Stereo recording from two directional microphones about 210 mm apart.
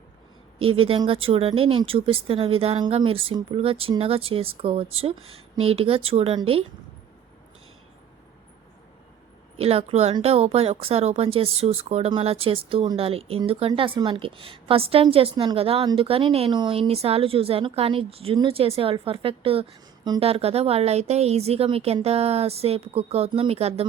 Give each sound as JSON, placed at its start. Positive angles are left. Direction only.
{"t": 0.6, "sound": "speech", "side_deg": -25}
{"t": 9.6, "sound": "speech", "side_deg": -30}